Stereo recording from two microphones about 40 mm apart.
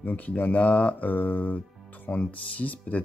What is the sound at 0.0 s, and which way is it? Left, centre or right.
Speech, left.